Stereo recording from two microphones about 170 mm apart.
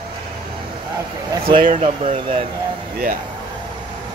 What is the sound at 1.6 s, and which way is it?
Speech, 45° right (ahead or behind).